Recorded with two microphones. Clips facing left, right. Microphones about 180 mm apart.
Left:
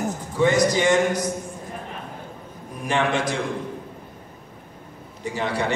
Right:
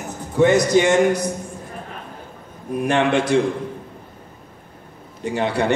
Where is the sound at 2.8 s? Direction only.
60° right (ahead or behind).